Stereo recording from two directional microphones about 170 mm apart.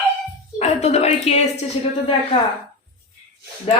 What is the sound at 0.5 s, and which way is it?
Speech, 40° left (ahead or behind).